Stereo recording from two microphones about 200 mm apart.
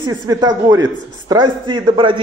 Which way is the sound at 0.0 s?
20° right (ahead or behind).